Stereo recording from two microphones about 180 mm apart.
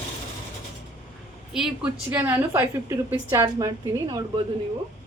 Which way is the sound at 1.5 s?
Centre (ahead or behind).